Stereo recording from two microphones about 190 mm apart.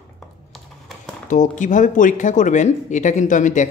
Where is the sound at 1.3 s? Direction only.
40° left (ahead or behind).